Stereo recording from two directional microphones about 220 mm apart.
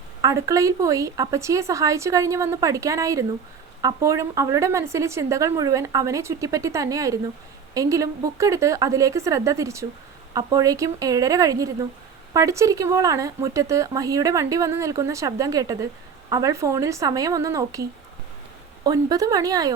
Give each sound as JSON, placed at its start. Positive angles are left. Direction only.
{"t": 0.2, "sound": "speech", "side_deg": -15}
{"t": 18.9, "sound": "speech", "side_deg": -15}